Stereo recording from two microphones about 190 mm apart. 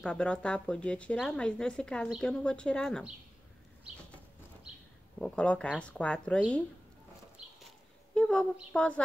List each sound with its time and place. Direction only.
0.0 s speech: 5° left (ahead or behind)
5.2 s speech: 5° left (ahead or behind)
8.1 s speech: 5° left (ahead or behind)